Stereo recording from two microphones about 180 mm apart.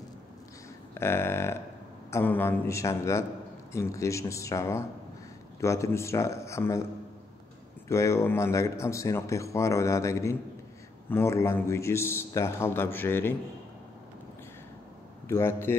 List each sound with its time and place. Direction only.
0.9 s a sound: 15° left (ahead or behind)
2.0 s speech: 10° left (ahead or behind)
7.9 s speech: 15° left (ahead or behind)
15.2 s speech: 15° left (ahead or behind)